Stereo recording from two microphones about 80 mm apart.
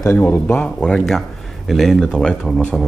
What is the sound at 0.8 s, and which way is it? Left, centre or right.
Speech, centre.